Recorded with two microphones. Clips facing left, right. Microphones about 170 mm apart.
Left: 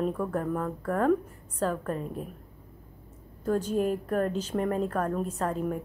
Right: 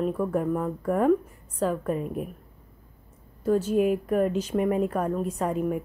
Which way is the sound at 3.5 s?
5° right (ahead or behind).